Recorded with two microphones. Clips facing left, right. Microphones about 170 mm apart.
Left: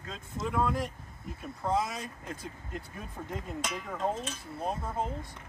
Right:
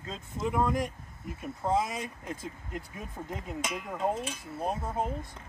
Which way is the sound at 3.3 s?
Centre (ahead or behind).